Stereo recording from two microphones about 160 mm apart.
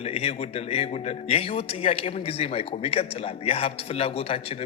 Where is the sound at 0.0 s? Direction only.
40° left (ahead or behind).